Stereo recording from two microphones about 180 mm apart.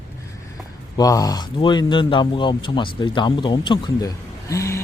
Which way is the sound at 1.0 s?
20° left (ahead or behind).